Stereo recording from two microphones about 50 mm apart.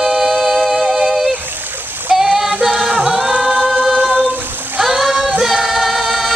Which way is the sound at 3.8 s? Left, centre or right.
Centre.